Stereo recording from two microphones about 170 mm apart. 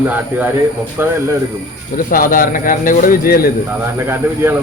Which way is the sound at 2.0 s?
55° left (ahead or behind).